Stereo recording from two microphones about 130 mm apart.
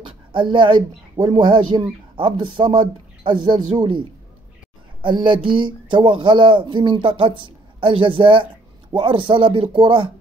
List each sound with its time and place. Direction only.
0.3 s speech: 40° right (ahead or behind)